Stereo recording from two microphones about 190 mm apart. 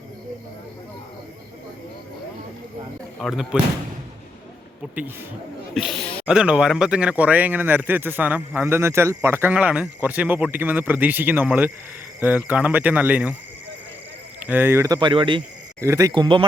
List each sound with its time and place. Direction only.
3.2 s speech: centre (ahead or behind)
5.7 s a sound: centre (ahead or behind)
6.2 s speech: 5° right (ahead or behind)
14.4 s speech: 10° right (ahead or behind)
14.9 s speech: 25° right (ahead or behind)